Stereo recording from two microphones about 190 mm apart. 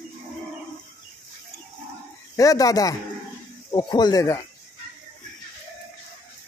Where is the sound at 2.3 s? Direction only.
20° left (ahead or behind).